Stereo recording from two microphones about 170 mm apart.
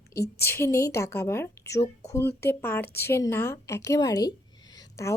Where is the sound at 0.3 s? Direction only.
15° left (ahead or behind).